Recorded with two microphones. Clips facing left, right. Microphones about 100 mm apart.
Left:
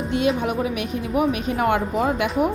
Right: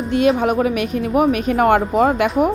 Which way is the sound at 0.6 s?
60° right (ahead or behind).